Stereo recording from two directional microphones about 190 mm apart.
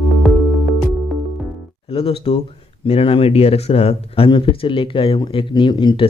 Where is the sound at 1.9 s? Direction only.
30° left (ahead or behind).